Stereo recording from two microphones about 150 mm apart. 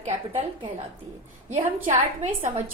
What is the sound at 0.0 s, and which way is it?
A woman's voice, 40° right (ahead or behind).